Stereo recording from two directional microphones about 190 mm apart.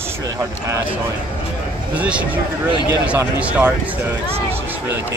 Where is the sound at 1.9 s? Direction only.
5° right (ahead or behind).